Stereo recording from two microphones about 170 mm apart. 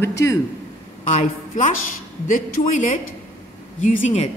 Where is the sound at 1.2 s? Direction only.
45° left (ahead or behind).